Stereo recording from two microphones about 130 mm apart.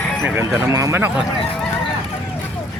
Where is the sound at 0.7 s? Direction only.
20° right (ahead or behind).